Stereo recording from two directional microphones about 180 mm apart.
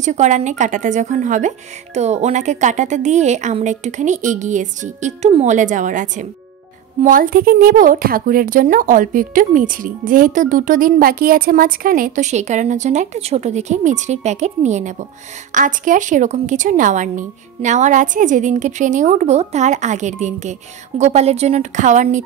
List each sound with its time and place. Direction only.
0.0 s a woman's voice: 40° right (ahead or behind)